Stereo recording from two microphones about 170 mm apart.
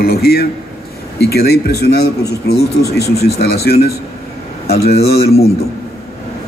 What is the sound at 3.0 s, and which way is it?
A man's voice, 65° left (ahead or behind).